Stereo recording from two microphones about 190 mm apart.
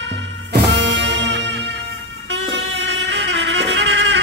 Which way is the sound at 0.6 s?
65° right (ahead or behind).